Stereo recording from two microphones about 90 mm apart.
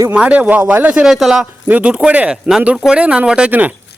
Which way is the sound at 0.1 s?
15° right (ahead or behind).